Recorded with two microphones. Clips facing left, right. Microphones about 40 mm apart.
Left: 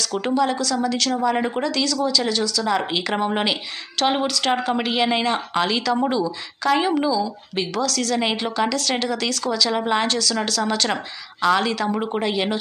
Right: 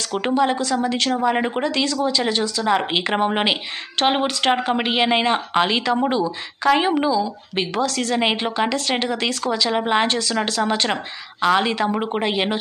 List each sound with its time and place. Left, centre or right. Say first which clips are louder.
0.0 s a woman's voice: right 1 dB; right